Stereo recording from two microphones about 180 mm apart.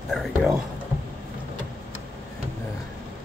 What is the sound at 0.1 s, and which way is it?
Speech, centre (ahead or behind).